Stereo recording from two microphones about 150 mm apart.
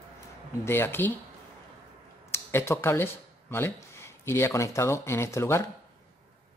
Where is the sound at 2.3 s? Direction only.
15° left (ahead or behind).